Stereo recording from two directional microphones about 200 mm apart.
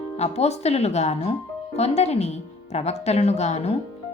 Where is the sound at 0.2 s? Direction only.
35° left (ahead or behind).